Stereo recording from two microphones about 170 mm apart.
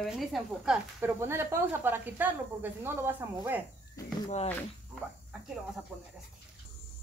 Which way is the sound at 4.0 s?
20° left (ahead or behind).